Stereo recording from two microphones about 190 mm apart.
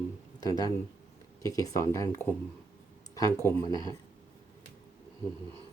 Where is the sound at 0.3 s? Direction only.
20° left (ahead or behind).